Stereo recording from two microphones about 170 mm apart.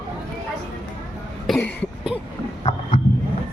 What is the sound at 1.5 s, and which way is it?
Cough, centre (ahead or behind).